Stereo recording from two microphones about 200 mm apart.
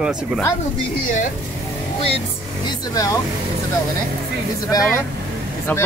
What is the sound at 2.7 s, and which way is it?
Speech, 15° left (ahead or behind).